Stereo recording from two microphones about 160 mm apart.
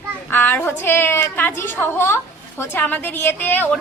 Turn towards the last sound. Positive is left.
turn(degrees=10)  # may be behind; listen again after turning